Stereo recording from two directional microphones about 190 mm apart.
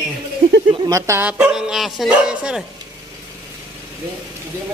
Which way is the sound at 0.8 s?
15° right (ahead or behind).